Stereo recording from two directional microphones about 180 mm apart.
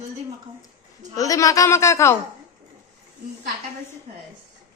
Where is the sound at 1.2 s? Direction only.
20° left (ahead or behind).